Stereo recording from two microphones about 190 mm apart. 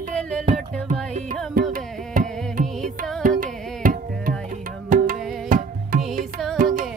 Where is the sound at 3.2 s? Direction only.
45° right (ahead or behind).